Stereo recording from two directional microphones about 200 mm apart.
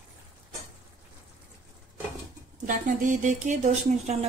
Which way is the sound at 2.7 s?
40° right (ahead or behind).